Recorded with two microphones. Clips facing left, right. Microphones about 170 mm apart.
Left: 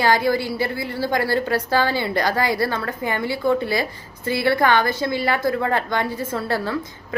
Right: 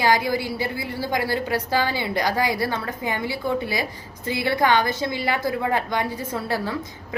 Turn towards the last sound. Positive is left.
turn(degrees=-15)  # may be behind; listen again after turning